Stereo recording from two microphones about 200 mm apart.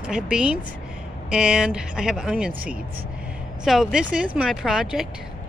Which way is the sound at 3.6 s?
5° right (ahead or behind).